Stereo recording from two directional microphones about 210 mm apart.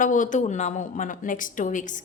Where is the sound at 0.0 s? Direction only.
40° left (ahead or behind).